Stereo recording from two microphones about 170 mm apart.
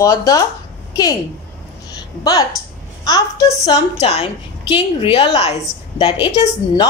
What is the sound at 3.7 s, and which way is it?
A woman's voice, 40° left (ahead or behind).